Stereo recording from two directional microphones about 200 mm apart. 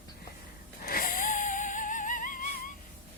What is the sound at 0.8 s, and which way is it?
Music, 45° left (ahead or behind).